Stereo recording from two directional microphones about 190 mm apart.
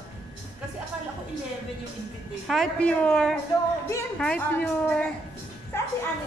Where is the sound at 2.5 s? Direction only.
5° left (ahead or behind).